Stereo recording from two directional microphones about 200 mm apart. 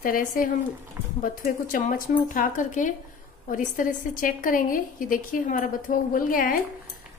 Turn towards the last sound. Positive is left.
turn(degrees=45)  # may be behind; listen again after turning